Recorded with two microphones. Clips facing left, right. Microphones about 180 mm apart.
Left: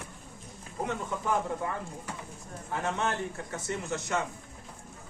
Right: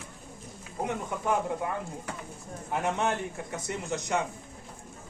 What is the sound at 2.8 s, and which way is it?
A man's voice, 15° right (ahead or behind).